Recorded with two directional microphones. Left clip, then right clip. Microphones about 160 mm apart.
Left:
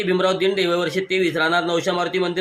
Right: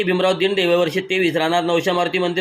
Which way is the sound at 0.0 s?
20° right (ahead or behind).